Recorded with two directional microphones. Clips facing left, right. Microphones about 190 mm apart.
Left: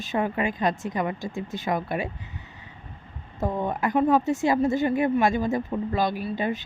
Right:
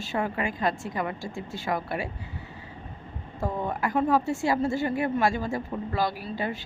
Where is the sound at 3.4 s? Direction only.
20° left (ahead or behind).